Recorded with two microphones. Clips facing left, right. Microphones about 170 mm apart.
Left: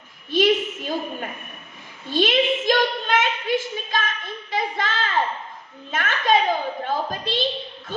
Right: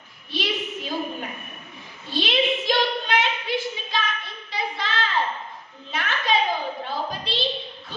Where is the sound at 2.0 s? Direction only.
50° left (ahead or behind).